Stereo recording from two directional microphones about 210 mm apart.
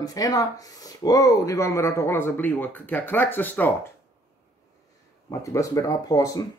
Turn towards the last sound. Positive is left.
turn(degrees=15)  # may be behind; listen again after turning